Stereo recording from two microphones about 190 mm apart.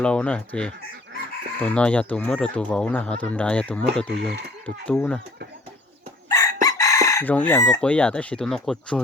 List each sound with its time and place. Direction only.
0.0 s speech: 5° left (ahead or behind)
6.2 s chicken: 15° left (ahead or behind)
7.8 s speech: 5° left (ahead or behind)